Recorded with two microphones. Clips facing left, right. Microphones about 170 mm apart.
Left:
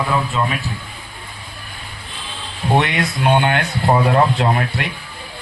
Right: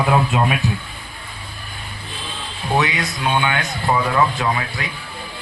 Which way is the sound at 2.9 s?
55° left (ahead or behind).